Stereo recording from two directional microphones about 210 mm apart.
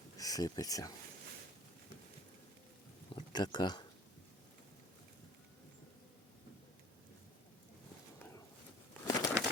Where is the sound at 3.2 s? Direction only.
20° left (ahead or behind).